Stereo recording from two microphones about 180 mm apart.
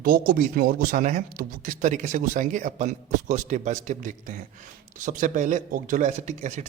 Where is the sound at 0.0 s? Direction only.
50° right (ahead or behind).